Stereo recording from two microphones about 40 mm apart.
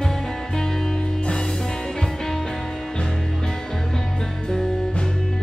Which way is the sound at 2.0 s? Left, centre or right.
Centre.